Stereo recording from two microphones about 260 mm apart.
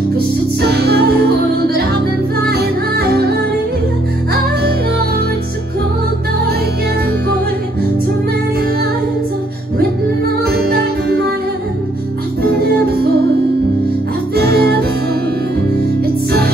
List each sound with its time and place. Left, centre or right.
0.6 s music: right
10.4 s music: right
12.6 s music: right
14.3 s music: right
16.3 s music: right